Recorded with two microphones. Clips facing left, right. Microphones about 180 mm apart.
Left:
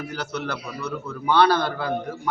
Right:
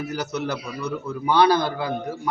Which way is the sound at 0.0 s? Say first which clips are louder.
Right 3 dB; 10° right (ahead or behind).